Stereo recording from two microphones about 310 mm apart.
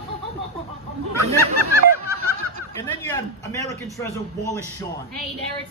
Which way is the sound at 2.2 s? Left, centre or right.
Right.